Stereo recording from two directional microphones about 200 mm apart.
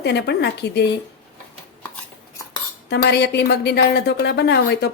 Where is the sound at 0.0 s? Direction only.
55° left (ahead or behind).